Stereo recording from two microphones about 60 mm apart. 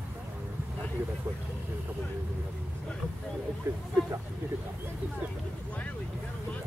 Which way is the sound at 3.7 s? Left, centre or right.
Right.